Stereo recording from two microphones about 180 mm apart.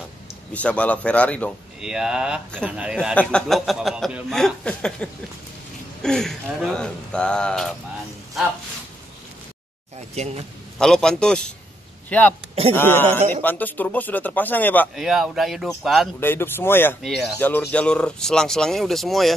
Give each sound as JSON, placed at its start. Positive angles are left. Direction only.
{"t": 0.5, "sound": "a man's voice", "side_deg": 5}
{"t": 1.8, "sound": "speech", "side_deg": -5}
{"t": 10.1, "sound": "speech", "side_deg": -40}
{"t": 10.8, "sound": "a man's voice", "side_deg": 5}
{"t": 15.0, "sound": "speech", "side_deg": 0}
{"t": 16.2, "sound": "a man's voice", "side_deg": 10}
{"t": 17.0, "sound": "speech", "side_deg": 0}